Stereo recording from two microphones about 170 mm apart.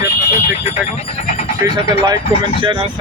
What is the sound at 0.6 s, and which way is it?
Speech, 40° left (ahead or behind).